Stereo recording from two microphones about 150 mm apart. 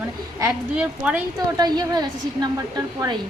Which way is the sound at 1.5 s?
25° right (ahead or behind).